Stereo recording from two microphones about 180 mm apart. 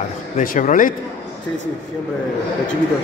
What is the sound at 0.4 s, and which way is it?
Speech, 45° left (ahead or behind).